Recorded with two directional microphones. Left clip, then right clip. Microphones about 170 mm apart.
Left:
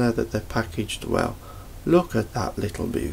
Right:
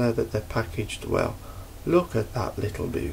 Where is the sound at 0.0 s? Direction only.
50° left (ahead or behind).